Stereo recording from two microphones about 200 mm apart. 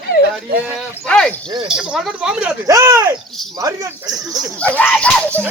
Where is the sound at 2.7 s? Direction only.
15° right (ahead or behind).